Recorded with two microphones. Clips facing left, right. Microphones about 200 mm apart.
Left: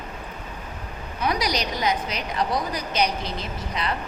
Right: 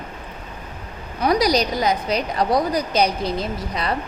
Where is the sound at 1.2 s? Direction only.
35° right (ahead or behind).